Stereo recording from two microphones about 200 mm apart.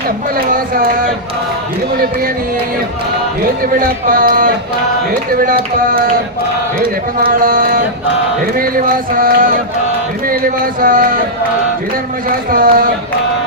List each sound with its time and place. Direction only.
0.3 s speech: 45° right (ahead or behind)
3.8 s speech: 45° right (ahead or behind)
6.7 s speech: 45° right (ahead or behind)
12.5 s speech: 45° right (ahead or behind)